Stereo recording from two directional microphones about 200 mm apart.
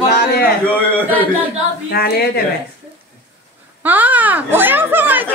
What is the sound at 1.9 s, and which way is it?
Speech, 50° left (ahead or behind).